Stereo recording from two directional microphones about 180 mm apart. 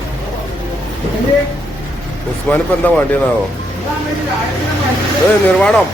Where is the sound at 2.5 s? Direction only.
10° left (ahead or behind).